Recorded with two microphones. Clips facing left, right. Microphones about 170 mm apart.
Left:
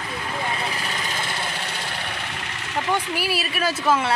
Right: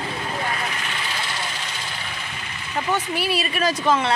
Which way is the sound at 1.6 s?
60° left (ahead or behind).